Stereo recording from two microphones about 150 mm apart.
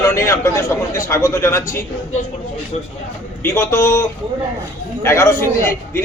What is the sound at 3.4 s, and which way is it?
Speech, 20° left (ahead or behind).